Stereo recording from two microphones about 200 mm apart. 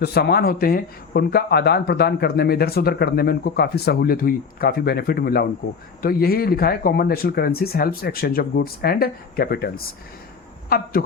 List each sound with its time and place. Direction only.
0.0 s speech: 55° left (ahead or behind)